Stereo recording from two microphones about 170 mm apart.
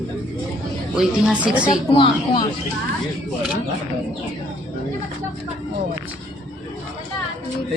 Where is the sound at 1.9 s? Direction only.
25° left (ahead or behind).